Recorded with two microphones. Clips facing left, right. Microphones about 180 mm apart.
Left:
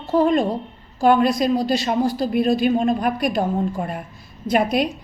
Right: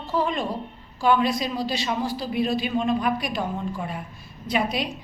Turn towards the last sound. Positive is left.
turn(degrees=50)  # may be behind; listen again after turning